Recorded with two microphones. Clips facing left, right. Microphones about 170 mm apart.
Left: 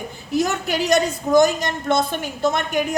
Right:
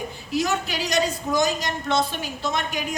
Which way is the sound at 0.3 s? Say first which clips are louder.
Left 4 dB; 50° left (ahead or behind).